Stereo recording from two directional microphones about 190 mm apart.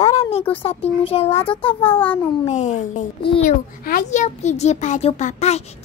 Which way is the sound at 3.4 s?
45° left (ahead or behind).